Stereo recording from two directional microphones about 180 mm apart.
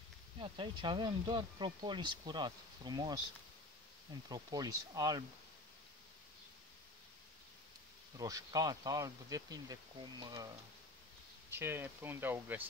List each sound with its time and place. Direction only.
0.4 s speech: 25° right (ahead or behind)
4.3 s speech: 20° right (ahead or behind)
8.2 s speech: 20° right (ahead or behind)
11.5 s speech: 10° right (ahead or behind)